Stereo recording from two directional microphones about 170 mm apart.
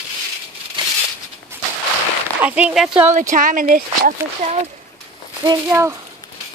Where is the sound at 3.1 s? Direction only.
50° right (ahead or behind).